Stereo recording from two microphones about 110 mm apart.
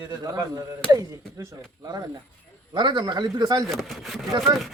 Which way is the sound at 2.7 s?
45° right (ahead or behind).